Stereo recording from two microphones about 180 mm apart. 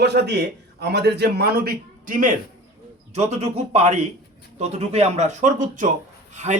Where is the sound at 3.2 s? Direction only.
35° right (ahead or behind).